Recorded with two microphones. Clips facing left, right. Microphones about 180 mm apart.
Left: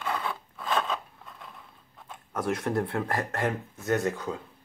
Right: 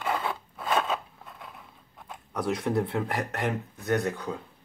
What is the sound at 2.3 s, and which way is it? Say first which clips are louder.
Speech: right 1 dB; centre (ahead or behind).